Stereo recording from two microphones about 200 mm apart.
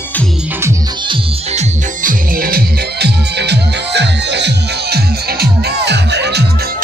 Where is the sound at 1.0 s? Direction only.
30° right (ahead or behind).